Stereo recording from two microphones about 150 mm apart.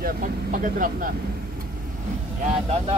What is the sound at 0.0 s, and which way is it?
Speech, 65° right (ahead or behind).